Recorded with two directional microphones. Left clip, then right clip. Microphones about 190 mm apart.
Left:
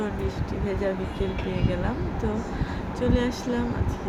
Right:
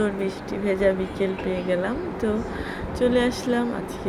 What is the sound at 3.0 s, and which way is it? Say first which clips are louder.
Speech: right 5 dB; 15° right (ahead or behind).